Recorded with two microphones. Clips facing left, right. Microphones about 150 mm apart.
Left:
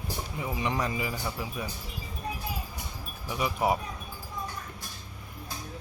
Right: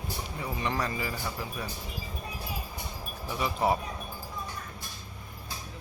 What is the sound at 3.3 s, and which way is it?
Speech, 10° left (ahead or behind).